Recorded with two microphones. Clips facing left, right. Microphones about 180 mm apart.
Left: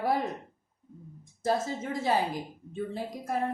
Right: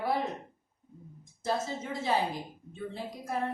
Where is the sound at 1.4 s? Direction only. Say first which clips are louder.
Left 3 dB; 45° left (ahead or behind).